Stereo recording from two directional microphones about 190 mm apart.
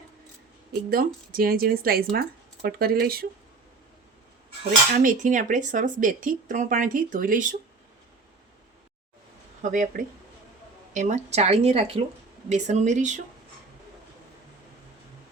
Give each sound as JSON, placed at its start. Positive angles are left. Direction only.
{"t": 0.9, "sound": "speech", "side_deg": -50}
{"t": 4.9, "sound": "speech", "side_deg": -40}
{"t": 9.6, "sound": "speech", "side_deg": -40}